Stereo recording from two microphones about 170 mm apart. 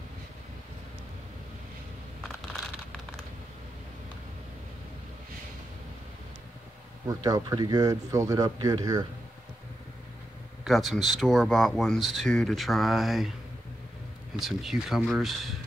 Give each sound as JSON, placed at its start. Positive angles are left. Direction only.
{"t": 7.1, "sound": "speech", "side_deg": -20}
{"t": 10.6, "sound": "speech", "side_deg": 0}
{"t": 14.3, "sound": "speech", "side_deg": 0}